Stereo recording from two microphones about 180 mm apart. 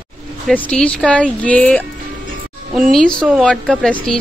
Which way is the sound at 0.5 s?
5° left (ahead or behind).